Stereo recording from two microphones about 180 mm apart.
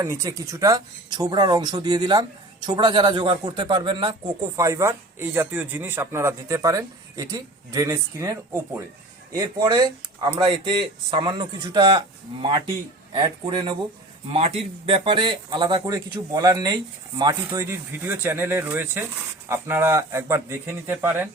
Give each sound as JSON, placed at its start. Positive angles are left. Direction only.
{"t": 0.0, "sound": "a man's voice", "side_deg": -20}